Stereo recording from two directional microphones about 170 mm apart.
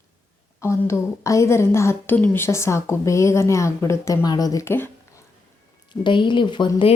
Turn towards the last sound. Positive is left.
turn(degrees=30)  # may be behind; listen again after turning